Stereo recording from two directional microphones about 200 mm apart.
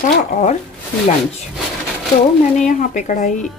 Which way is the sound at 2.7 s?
40° left (ahead or behind).